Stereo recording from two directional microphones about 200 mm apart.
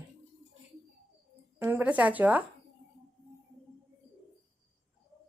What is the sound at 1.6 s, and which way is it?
Speech, 10° right (ahead or behind).